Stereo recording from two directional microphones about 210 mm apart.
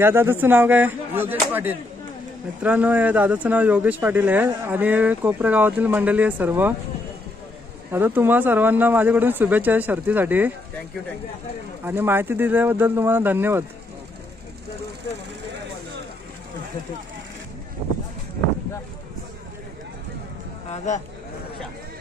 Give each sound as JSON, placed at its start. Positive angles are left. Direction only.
{"t": 0.0, "sound": "speech", "side_deg": -10}
{"t": 7.9, "sound": "speech", "side_deg": -10}
{"t": 11.8, "sound": "speech", "side_deg": -10}
{"t": 20.7, "sound": "a man's voice", "side_deg": 35}